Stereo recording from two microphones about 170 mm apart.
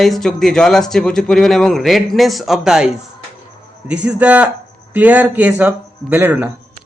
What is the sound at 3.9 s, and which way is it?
Speech, 5° right (ahead or behind).